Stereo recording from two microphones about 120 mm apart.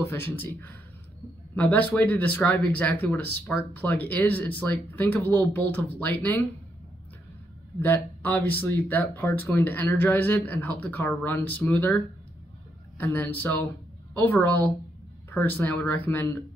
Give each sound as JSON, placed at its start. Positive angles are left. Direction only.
{"t": 0.0, "sound": "speech", "side_deg": 20}
{"t": 7.8, "sound": "speech", "side_deg": 15}